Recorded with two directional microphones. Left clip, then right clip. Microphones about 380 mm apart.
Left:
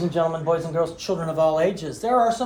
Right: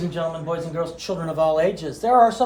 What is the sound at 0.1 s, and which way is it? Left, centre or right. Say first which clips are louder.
Speech: left 5 dB; centre.